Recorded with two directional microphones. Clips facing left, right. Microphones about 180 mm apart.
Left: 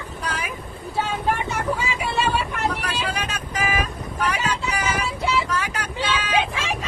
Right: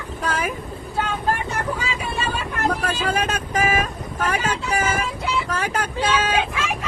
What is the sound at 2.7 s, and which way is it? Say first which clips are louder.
Vehicle: right 4 dB; 45° right (ahead or behind).